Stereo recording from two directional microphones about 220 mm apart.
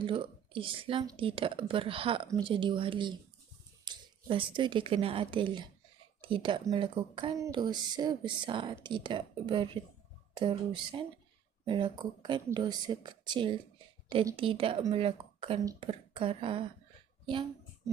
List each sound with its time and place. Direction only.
0.0 s speech: 25° right (ahead or behind)